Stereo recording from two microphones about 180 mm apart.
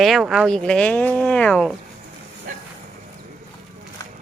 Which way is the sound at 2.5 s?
45° right (ahead or behind).